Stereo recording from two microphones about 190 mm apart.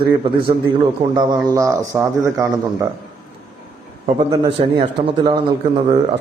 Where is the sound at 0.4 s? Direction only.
25° right (ahead or behind).